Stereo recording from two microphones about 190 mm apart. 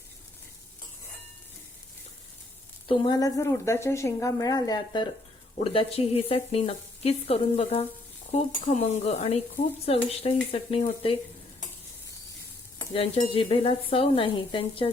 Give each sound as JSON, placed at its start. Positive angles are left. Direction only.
{"t": 2.8, "sound": "a woman's voice", "side_deg": 25}
{"t": 12.9, "sound": "a woman's voice", "side_deg": 30}